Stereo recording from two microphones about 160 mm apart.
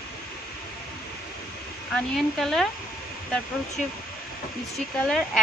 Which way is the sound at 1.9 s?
Centre (ahead or behind).